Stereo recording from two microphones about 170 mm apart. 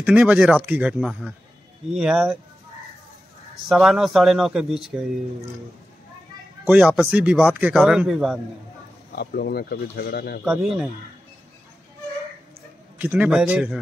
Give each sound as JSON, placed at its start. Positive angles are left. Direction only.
{"t": 0.0, "sound": "a man's voice", "side_deg": -5}
{"t": 3.6, "sound": "speech", "side_deg": 0}
{"t": 6.6, "sound": "a man's voice", "side_deg": -10}
{"t": 9.1, "sound": "speech", "side_deg": 65}
{"t": 10.4, "sound": "speech", "side_deg": -5}
{"t": 13.0, "sound": "speech", "side_deg": -10}